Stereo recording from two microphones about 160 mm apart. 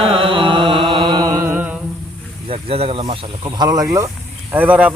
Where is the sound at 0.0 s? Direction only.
35° right (ahead or behind); by 1.8 s 10° right (ahead or behind).